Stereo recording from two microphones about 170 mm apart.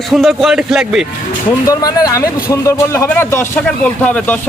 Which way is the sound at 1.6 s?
20° left (ahead or behind).